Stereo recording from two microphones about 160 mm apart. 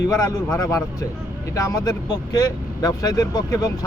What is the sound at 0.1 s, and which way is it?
Speech, 20° left (ahead or behind).